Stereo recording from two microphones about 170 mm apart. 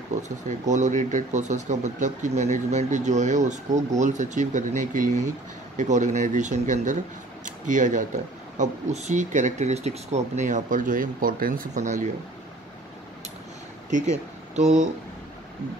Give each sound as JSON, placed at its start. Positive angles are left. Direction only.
{"t": 0.1, "sound": "speech", "side_deg": -45}
{"t": 13.8, "sound": "speech", "side_deg": -45}